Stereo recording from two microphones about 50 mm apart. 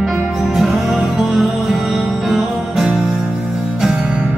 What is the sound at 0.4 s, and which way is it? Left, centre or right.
Music, centre.